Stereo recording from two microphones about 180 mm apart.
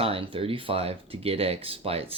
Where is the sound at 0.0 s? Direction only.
30° right (ahead or behind).